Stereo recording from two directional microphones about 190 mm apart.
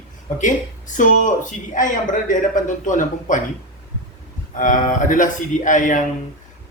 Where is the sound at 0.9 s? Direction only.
45° left (ahead or behind).